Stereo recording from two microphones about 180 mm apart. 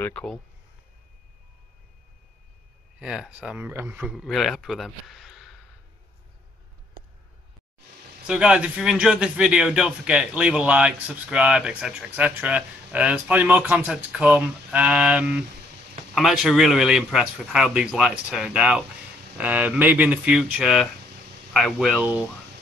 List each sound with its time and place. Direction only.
0.0 s a man's voice: 5° left (ahead or behind)
3.0 s a man's voice: 5° right (ahead or behind)
8.3 s a man's voice: 5° right (ahead or behind)